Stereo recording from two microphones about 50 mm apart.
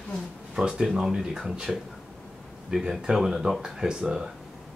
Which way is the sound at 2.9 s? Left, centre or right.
Centre.